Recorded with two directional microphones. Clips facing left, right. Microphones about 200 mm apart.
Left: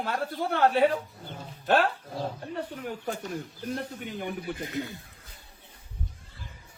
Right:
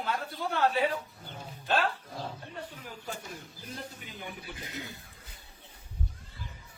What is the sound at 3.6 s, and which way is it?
Speech, 60° left (ahead or behind).